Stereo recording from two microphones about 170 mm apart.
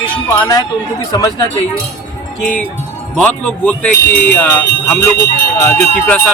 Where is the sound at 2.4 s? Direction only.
5° left (ahead or behind).